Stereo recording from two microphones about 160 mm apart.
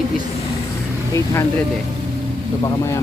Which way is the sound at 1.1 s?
15° left (ahead or behind).